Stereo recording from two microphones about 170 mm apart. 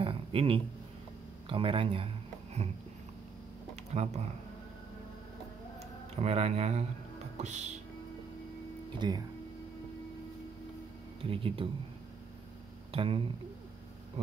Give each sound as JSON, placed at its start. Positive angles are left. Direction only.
{"t": 0.0, "sound": "a sound", "side_deg": -30}
{"t": 1.5, "sound": "speech", "side_deg": -30}
{"t": 3.7, "sound": "speech", "side_deg": -40}
{"t": 5.8, "sound": "a sound", "side_deg": -40}
{"t": 7.4, "sound": "speech", "side_deg": -45}
{"t": 9.0, "sound": "speech", "side_deg": -25}
{"t": 11.2, "sound": "speech", "side_deg": -30}
{"t": 12.9, "sound": "speech", "side_deg": -35}